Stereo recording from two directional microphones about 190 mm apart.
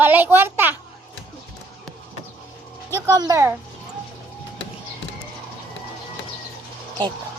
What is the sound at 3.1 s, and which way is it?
Speech, 15° right (ahead or behind).